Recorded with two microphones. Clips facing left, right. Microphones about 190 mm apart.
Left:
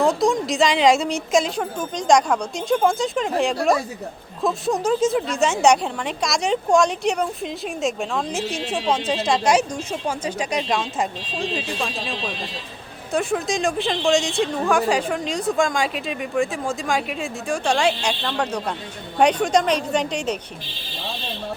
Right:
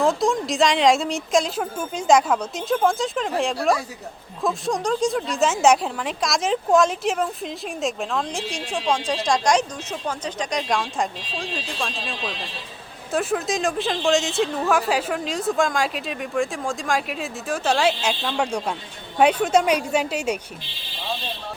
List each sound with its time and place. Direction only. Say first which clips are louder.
0.0 s speech: left 2 dB; centre (ahead or behind)
13.1 s a woman's voice: left 1 dB; centre (ahead or behind)